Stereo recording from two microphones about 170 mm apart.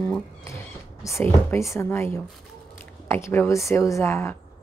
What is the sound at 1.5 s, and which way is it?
Speech, 15° left (ahead or behind).